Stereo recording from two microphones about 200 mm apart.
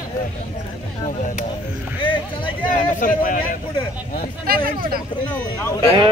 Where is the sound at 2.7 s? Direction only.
40° left (ahead or behind).